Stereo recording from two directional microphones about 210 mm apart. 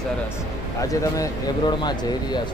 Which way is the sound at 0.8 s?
15° left (ahead or behind).